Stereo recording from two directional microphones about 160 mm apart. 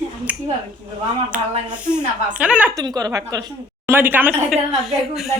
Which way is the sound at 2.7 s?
25° right (ahead or behind).